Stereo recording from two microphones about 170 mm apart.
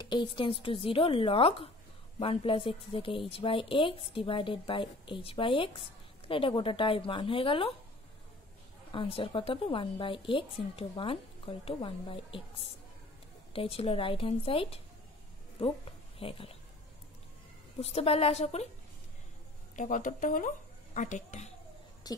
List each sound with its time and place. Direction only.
0.0 s speech: 25° left (ahead or behind)
8.9 s speech: 30° left (ahead or behind)
13.5 s speech: 35° left (ahead or behind)
17.7 s speech: 35° left (ahead or behind)
19.7 s speech: 50° left (ahead or behind)
22.0 s a sound: 25° left (ahead or behind)